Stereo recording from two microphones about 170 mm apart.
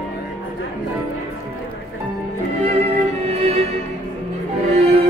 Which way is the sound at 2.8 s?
35° right (ahead or behind).